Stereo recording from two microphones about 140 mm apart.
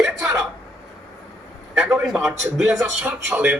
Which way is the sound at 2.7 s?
20° right (ahead or behind).